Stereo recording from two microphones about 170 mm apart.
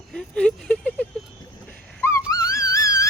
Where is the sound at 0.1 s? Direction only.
5° left (ahead or behind).